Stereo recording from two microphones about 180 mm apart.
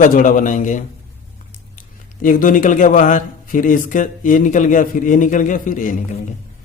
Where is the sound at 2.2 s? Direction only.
50° left (ahead or behind).